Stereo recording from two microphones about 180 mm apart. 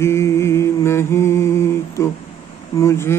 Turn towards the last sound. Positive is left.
turn(degrees=15)  # may be behind; listen again after turning